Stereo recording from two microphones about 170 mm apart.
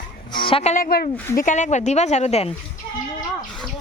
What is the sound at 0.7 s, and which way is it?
Speech, 60° left (ahead or behind).